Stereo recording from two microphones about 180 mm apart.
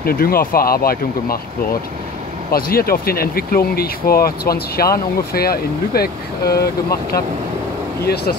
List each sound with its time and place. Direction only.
0.0 s speech: 55° left (ahead or behind)
2.5 s speech: 55° left (ahead or behind)
8.0 s speech: 60° left (ahead or behind)